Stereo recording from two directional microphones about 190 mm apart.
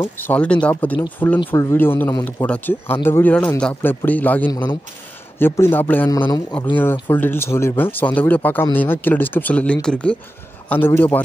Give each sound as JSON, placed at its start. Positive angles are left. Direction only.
{"t": 0.3, "sound": "speech", "side_deg": 5}
{"t": 4.5, "sound": "speech", "side_deg": 20}
{"t": 5.4, "sound": "speech", "side_deg": 10}
{"t": 6.1, "sound": "speech", "side_deg": 25}
{"t": 6.8, "sound": "speech", "side_deg": 10}